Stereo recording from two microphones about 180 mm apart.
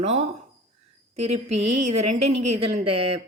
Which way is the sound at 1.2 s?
35° right (ahead or behind).